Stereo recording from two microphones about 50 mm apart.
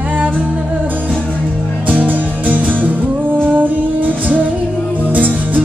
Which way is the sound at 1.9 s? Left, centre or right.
Right.